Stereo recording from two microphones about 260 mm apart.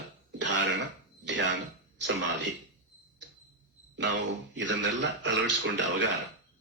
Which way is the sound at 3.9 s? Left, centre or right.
Right.